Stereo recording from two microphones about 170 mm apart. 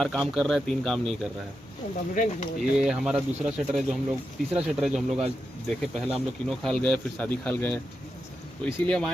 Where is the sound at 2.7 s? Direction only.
5° right (ahead or behind).